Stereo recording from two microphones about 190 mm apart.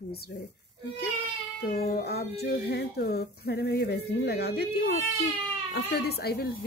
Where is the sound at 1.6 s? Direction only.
55° left (ahead or behind).